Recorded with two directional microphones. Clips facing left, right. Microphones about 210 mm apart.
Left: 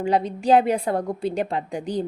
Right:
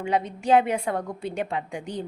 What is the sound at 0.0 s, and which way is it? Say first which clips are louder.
A woman's voice: left 4 dB; 35° left (ahead or behind).